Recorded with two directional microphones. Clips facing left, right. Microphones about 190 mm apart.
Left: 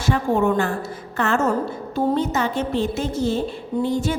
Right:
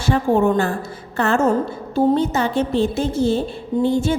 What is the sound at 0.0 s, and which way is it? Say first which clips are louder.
A woman's voice: right 3 dB; 30° right (ahead or behind).